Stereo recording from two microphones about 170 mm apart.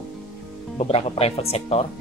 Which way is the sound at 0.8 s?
35° left (ahead or behind).